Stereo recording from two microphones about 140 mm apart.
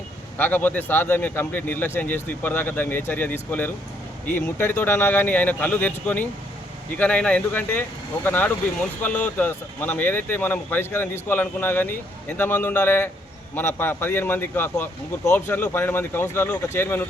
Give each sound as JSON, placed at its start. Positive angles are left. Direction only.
{"t": 0.3, "sound": "speech", "side_deg": 15}